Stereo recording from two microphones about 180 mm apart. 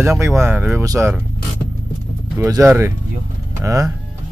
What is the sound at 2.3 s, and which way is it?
Speech, 15° right (ahead or behind).